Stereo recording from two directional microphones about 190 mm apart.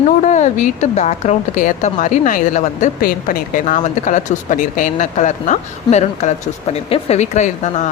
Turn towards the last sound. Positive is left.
turn(degrees=40)  # may be behind; listen again after turning